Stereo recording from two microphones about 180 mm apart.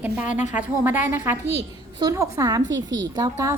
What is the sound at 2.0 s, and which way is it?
A woman's voice, 20° right (ahead or behind).